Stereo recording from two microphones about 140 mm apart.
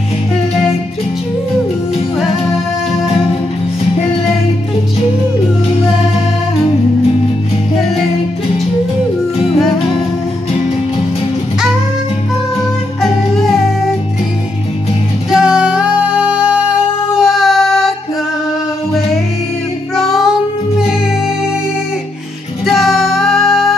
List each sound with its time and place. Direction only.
15.3 s music: 5° right (ahead or behind)
20.0 s music: centre (ahead or behind)
22.7 s music: centre (ahead or behind)